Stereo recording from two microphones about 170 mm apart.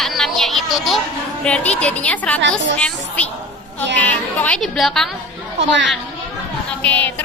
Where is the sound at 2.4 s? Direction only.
90° right.